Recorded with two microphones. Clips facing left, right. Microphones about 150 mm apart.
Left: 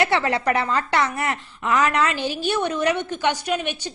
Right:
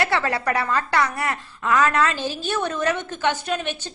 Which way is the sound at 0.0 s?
20° left (ahead or behind).